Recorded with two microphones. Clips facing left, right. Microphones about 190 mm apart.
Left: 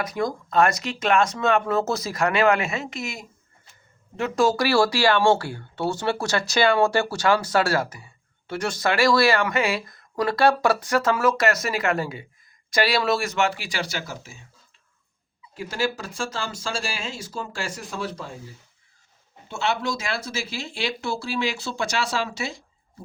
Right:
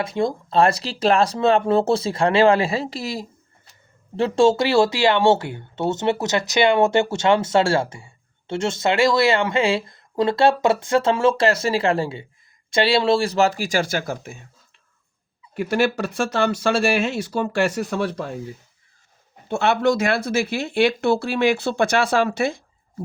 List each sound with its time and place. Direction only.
0.0 s speech: 25° right (ahead or behind); by 14.4 s 55° right (ahead or behind)
15.5 s speech: 65° right (ahead or behind)
19.5 s speech: 55° right (ahead or behind)